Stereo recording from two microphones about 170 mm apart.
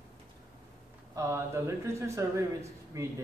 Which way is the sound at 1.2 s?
15° right (ahead or behind).